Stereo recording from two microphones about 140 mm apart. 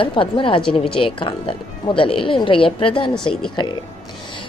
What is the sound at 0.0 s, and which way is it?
A woman's voice, 35° left (ahead or behind).